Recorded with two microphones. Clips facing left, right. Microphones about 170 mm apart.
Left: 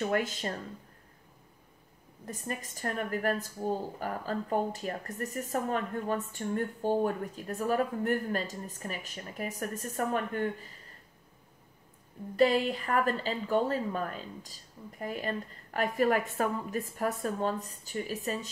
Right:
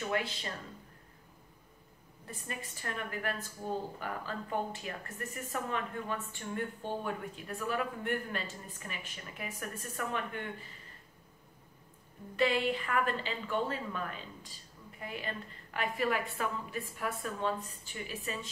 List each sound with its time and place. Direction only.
0.1 s speech: 45° left (ahead or behind)
2.2 s a woman's voice: 40° left (ahead or behind)
12.4 s a woman's voice: 40° left (ahead or behind)